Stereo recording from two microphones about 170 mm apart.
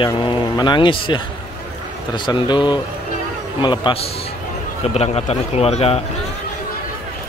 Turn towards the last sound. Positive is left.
turn(degrees=35)  # may be behind; listen again after turning